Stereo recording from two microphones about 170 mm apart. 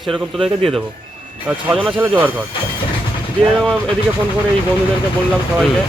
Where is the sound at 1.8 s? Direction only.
5° right (ahead or behind).